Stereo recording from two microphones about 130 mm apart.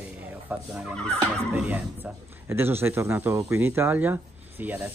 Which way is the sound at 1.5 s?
10° right (ahead or behind).